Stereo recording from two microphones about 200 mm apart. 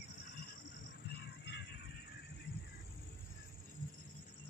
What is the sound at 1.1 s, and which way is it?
Music, 55° left (ahead or behind).